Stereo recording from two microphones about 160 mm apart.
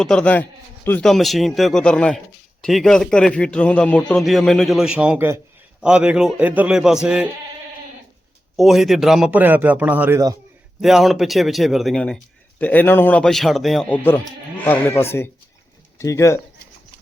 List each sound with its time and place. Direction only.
0.0 s speech: 5° left (ahead or behind)
8.5 s a man's voice: centre (ahead or behind); by 16.4 s 20° left (ahead or behind)